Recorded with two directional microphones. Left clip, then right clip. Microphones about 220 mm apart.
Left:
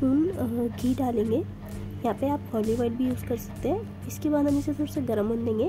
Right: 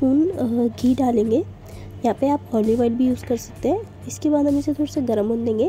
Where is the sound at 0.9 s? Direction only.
20° right (ahead or behind).